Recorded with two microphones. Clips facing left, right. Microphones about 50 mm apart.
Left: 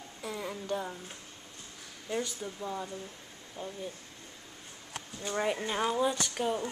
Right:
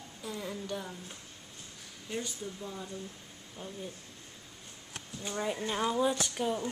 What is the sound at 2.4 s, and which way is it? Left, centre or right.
Speech, left.